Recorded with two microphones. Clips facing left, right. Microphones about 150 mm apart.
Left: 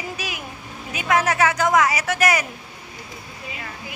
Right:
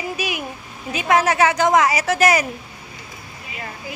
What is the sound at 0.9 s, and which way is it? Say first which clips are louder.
A woman's voice: right 3 dB; 30° right (ahead or behind).